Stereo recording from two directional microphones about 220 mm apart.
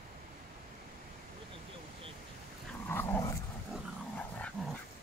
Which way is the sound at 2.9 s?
10° left (ahead or behind).